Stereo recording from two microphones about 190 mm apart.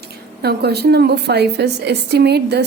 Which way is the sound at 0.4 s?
60° right (ahead or behind).